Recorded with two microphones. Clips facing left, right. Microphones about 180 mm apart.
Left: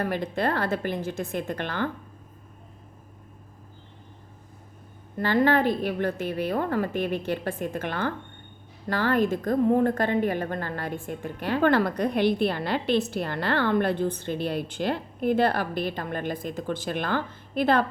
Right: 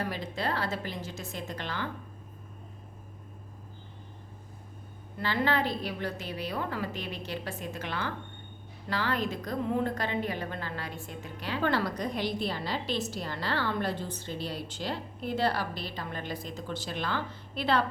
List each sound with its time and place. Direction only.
0.0 s a woman's voice: 55° left (ahead or behind)
5.1 s a woman's voice: 45° left (ahead or behind)